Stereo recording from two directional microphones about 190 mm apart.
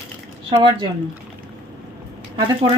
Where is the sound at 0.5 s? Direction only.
25° right (ahead or behind).